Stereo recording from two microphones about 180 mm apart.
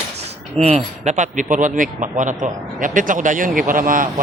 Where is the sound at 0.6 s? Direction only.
40° right (ahead or behind).